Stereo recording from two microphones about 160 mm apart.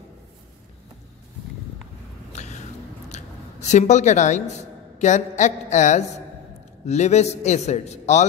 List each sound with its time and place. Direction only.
2.3 s vehicle: 45° left (ahead or behind)
3.1 s a sound: 45° left (ahead or behind)
4.9 s a man's voice: 50° left (ahead or behind)